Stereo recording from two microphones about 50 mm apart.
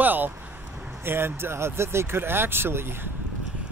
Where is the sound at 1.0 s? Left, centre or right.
Right.